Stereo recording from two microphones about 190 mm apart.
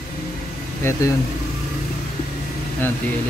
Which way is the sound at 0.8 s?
15° left (ahead or behind).